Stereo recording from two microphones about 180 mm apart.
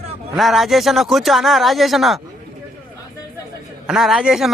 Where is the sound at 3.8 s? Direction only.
Centre (ahead or behind).